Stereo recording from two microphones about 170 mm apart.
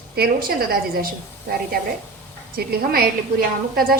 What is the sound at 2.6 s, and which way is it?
A woman's voice, 65° right (ahead or behind).